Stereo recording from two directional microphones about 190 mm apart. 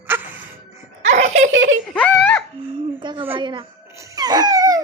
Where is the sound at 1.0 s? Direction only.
35° right (ahead or behind).